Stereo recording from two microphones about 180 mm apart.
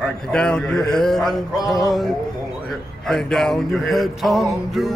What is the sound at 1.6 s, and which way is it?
Music, 20° left (ahead or behind).